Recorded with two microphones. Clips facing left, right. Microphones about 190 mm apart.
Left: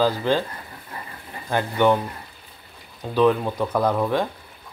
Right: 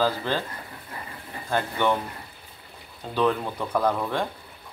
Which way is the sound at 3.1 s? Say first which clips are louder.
Left 5 dB; 15° left (ahead or behind).